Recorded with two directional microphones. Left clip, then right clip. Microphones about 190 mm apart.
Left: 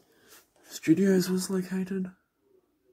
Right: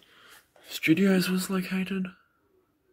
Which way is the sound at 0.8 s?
35° right (ahead or behind).